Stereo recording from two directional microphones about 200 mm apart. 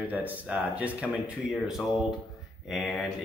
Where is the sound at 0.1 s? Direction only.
10° right (ahead or behind).